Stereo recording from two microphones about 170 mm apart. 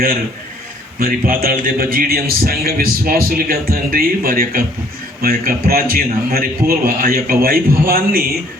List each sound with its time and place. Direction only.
0.9 s a man's voice: 60° right (ahead or behind)